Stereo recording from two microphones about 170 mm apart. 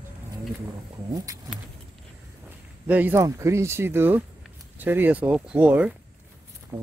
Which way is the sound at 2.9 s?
10° right (ahead or behind).